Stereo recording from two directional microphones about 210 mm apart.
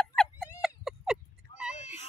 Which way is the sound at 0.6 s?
Centre (ahead or behind).